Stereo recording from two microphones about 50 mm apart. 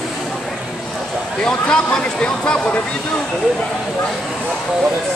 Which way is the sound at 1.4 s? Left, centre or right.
Centre.